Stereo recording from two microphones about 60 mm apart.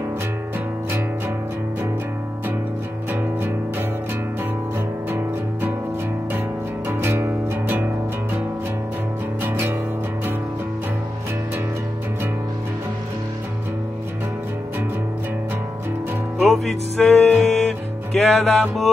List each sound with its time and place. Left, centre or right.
3.1 s music: right
6.9 s music: right
9.4 s music: right
16.3 s music: centre